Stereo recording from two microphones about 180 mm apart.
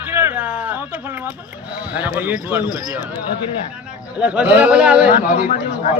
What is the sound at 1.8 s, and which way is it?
A man's voice, 10° right (ahead or behind).